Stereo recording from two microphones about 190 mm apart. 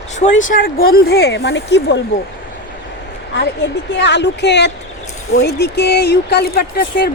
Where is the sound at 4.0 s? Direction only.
65° left (ahead or behind).